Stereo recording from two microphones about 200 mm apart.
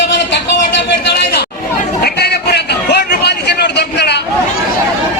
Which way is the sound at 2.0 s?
55° left (ahead or behind).